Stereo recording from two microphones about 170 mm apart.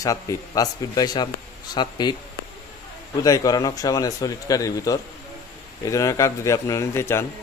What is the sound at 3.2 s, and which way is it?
Speech, 20° left (ahead or behind).